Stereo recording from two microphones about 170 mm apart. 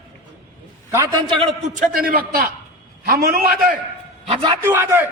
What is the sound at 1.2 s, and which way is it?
Speech, 30° right (ahead or behind).